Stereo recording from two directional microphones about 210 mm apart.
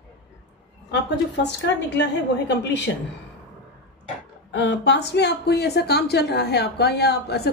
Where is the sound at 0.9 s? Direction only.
55° left (ahead or behind).